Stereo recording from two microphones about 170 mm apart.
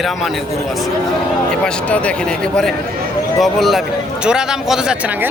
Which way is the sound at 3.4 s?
Centre (ahead or behind).